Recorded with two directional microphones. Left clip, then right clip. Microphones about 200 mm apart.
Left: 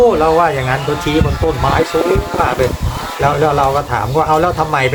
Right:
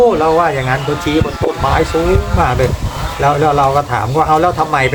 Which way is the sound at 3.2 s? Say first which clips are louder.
Right 1 dB; 5° right (ahead or behind).